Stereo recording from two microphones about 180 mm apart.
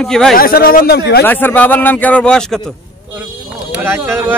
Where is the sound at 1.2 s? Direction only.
10° left (ahead or behind).